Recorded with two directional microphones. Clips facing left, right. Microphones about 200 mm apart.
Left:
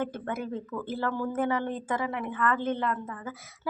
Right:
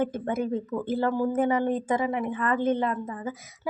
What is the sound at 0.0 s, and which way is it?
Speech, 20° right (ahead or behind).